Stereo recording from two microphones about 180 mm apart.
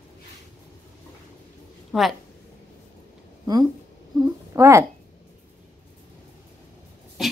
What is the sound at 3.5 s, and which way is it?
Speech, 20° right (ahead or behind).